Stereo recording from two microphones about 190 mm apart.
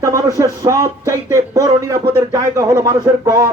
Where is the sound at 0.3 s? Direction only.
15° right (ahead or behind).